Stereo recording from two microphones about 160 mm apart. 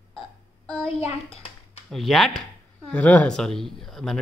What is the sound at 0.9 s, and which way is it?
Speech, 40° left (ahead or behind).